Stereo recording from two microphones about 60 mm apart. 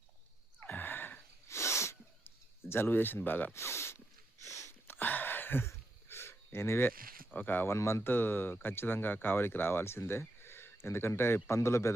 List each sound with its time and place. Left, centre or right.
0.6 s sigh: left
1.5 s sneeze: left
2.2 s speech: left
3.5 s speech: left
4.4 s a sound: left
4.9 s a sound: left
7.3 s speech: left
7.7 s speech: left
8.0 s speech: left